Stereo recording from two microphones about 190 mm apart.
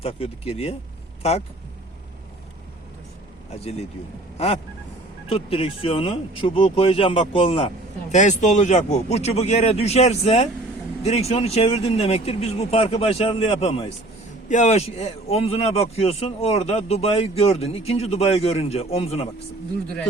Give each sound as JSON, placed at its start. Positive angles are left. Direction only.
{"t": 0.0, "sound": "a man's voice", "side_deg": 30}
{"t": 3.5, "sound": "a man's voice", "side_deg": 35}